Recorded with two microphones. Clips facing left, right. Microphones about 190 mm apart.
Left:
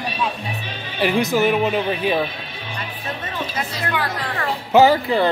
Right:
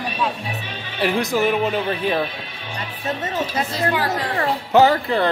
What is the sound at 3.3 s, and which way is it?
Speech, 35° right (ahead or behind).